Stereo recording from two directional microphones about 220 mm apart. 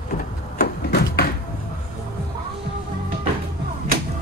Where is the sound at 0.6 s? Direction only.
50° left (ahead or behind).